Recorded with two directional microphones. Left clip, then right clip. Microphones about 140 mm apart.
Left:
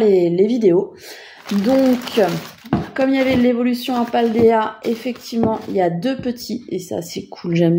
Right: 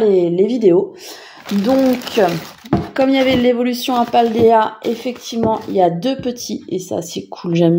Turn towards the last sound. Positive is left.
turn(degrees=-15)  # may be behind; listen again after turning